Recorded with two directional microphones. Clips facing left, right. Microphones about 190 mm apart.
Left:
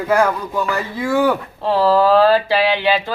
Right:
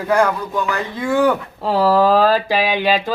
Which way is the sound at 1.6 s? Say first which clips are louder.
Even; 10° right (ahead or behind).